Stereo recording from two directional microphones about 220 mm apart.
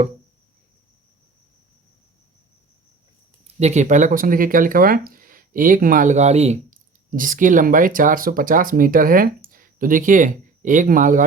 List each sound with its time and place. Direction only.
3.4 s speech: 30° right (ahead or behind)